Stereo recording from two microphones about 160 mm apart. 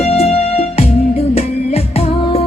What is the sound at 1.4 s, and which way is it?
Music, 40° left (ahead or behind).